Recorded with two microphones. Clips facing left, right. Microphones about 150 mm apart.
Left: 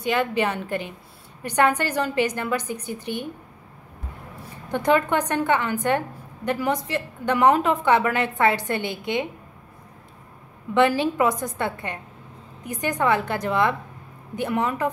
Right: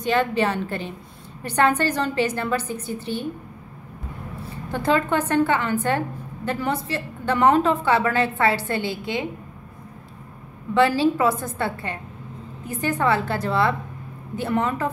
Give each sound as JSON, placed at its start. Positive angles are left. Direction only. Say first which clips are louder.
{"t": 0.0, "sound": "a woman's voice", "louder": "right 2 dB", "side_deg": 10}
{"t": 4.6, "sound": "a woman's voice", "louder": "left 1 dB", "side_deg": 15}
{"t": 10.7, "sound": "a woman's voice", "louder": "right 1 dB", "side_deg": 20}